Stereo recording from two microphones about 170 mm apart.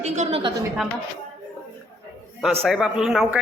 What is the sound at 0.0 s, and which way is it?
Speech, 40° right (ahead or behind).